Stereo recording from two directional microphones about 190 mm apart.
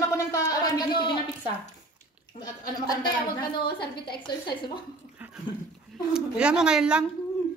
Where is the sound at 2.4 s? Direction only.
20° left (ahead or behind).